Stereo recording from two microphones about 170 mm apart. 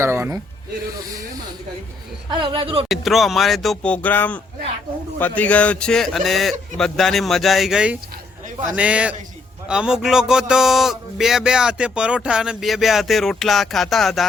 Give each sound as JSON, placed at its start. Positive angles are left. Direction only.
{"t": 0.0, "sound": "a sound", "side_deg": -15}
{"t": 2.3, "sound": "speech", "side_deg": -30}
{"t": 2.9, "sound": "a man's voice", "side_deg": 0}